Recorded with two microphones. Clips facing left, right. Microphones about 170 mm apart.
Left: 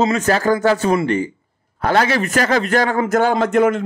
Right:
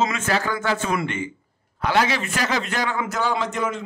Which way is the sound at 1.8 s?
50° left (ahead or behind).